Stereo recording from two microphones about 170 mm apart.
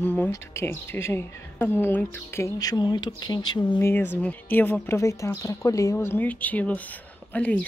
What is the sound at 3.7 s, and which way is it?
A woman's voice, 10° left (ahead or behind).